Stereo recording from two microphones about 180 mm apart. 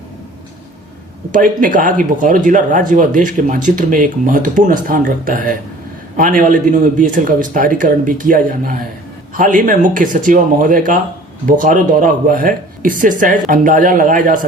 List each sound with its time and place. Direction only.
1.3 s speech: 50° right (ahead or behind)